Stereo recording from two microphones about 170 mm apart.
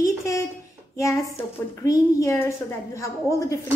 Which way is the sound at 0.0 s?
20° left (ahead or behind).